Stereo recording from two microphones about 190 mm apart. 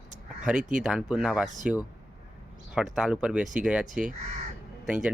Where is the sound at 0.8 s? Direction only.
5° right (ahead or behind).